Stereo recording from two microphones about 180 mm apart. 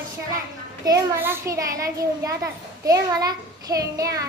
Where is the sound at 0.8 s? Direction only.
20° right (ahead or behind).